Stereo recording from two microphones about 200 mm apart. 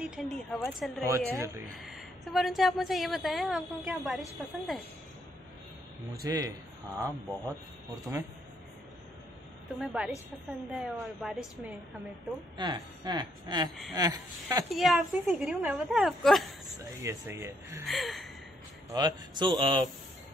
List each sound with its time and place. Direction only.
0.0 s a woman's voice: centre (ahead or behind)
1.0 s speech: 15° right (ahead or behind)
1.8 s a woman's voice: centre (ahead or behind)
6.2 s speech: 15° right (ahead or behind)
9.8 s a woman's voice: 5° right (ahead or behind)
12.5 s speech: 20° right (ahead or behind)
13.7 s a woman's voice: centre (ahead or behind)
13.9 s speech: 20° right (ahead or behind)
14.7 s a woman's voice: centre (ahead or behind)
17.0 s speech: 15° right (ahead or behind)
17.8 s a woman's voice: centre (ahead or behind)
18.9 s speech: 20° right (ahead or behind)